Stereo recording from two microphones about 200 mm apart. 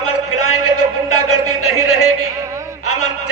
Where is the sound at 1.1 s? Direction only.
90° left.